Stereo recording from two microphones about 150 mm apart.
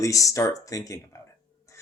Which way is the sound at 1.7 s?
20° left (ahead or behind).